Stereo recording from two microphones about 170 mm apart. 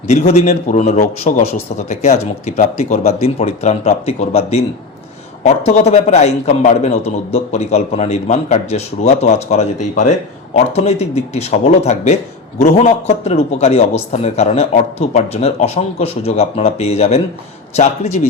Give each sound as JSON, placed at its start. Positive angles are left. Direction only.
{"t": 0.1, "sound": "a man's voice", "side_deg": 40}
{"t": 5.6, "sound": "a man's voice", "side_deg": 40}